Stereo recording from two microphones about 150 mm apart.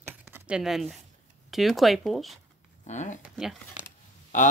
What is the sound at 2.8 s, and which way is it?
Speech, 50° left (ahead or behind).